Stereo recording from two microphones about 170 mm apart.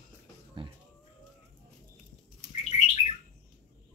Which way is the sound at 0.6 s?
30° right (ahead or behind).